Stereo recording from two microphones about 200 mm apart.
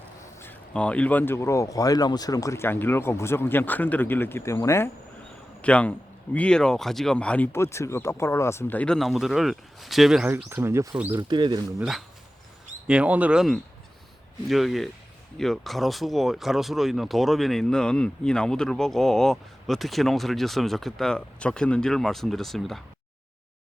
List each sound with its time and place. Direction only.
0.4 s speech: 5° left (ahead or behind)
10.3 s speech: 10° right (ahead or behind)
11.1 s speech: 20° right (ahead or behind)
11.8 s speech: centre (ahead or behind)